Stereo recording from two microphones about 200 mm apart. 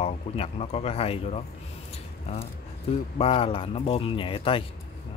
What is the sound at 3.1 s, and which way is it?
Speech, 30° left (ahead or behind).